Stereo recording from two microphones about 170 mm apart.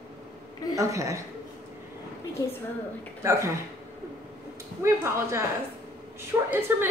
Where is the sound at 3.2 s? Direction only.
15° right (ahead or behind).